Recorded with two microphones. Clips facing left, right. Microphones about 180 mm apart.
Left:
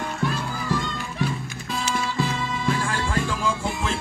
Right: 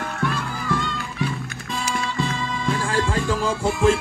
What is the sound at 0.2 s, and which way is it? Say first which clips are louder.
Music: right 2 dB; 60° right (ahead or behind).